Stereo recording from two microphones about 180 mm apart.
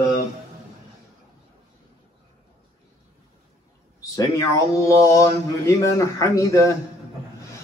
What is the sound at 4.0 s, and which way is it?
A man's voice, 20° left (ahead or behind).